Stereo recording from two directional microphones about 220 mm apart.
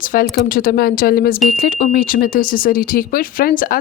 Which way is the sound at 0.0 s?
40° left (ahead or behind).